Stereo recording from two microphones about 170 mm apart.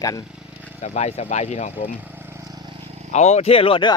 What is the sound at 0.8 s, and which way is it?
Speech, 40° left (ahead or behind).